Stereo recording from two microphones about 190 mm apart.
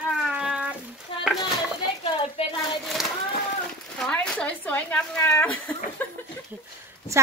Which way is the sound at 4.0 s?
5° left (ahead or behind).